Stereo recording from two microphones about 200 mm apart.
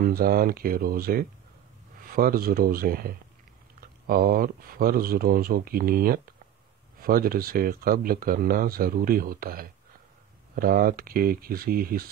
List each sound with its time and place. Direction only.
0.0 s speech: 45° right (ahead or behind)